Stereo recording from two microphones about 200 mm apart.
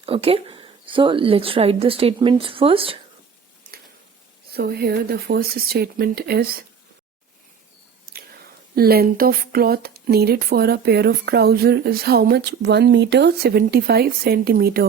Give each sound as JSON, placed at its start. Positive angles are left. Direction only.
{"t": 0.0, "sound": "a woman's voice", "side_deg": -30}
{"t": 4.5, "sound": "speech", "side_deg": -55}
{"t": 8.7, "sound": "speech", "side_deg": -50}